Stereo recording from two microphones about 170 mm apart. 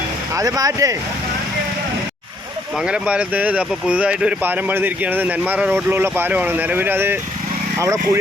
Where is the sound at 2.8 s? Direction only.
5° right (ahead or behind).